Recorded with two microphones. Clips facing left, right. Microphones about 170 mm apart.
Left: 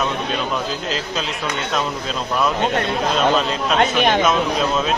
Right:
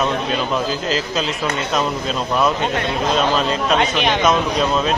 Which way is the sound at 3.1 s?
Centre (ahead or behind).